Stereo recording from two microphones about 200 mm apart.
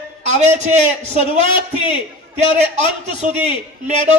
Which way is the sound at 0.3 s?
35° right (ahead or behind).